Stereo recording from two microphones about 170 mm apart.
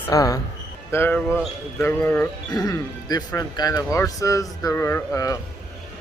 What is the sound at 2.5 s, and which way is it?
Speech, 20° left (ahead or behind).